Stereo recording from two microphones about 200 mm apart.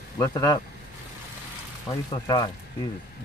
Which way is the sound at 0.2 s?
20° left (ahead or behind).